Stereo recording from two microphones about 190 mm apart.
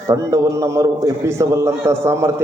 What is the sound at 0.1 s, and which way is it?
A man's voice, 15° right (ahead or behind).